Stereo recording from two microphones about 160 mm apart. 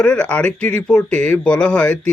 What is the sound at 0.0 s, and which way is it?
Speech, 5° left (ahead or behind).